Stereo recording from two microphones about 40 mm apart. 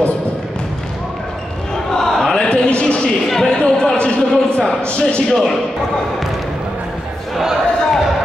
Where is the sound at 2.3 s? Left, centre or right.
Left.